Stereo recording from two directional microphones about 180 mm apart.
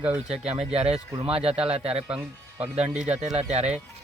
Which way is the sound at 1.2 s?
30° right (ahead or behind).